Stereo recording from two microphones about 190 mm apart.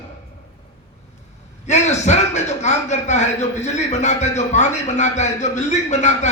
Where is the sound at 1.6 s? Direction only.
35° left (ahead or behind).